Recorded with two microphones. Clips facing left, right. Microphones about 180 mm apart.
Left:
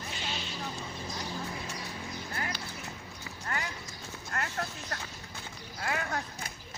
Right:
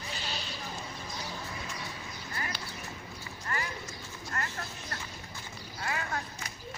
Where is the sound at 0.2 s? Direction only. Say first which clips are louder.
Left 3 dB; 40° right (ahead or behind).